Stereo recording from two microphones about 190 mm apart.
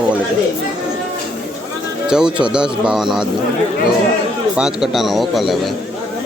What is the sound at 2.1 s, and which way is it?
Speech, 5° right (ahead or behind).